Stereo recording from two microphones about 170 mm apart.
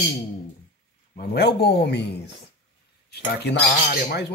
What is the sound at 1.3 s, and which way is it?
Speech, 70° left (ahead or behind).